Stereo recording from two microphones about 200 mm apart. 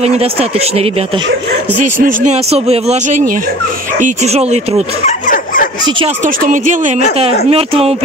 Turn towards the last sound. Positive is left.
turn(degrees=-30)  # may be behind; listen again after turning